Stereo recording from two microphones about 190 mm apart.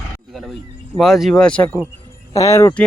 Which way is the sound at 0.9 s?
Centre (ahead or behind).